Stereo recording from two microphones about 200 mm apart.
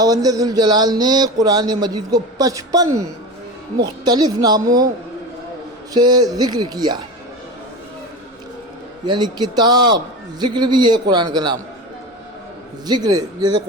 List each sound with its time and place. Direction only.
0.0 s speech: 20° right (ahead or behind)
5.9 s speech: 20° right (ahead or behind)
9.0 s speech: 20° right (ahead or behind)
12.9 s speech: 20° right (ahead or behind)